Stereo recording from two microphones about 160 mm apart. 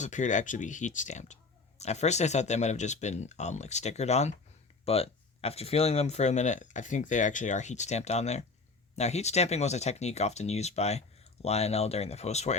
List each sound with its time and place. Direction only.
0.0 s speech: 50° left (ahead or behind)